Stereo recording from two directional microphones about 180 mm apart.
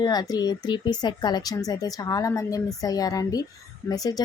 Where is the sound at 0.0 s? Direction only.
20° left (ahead or behind).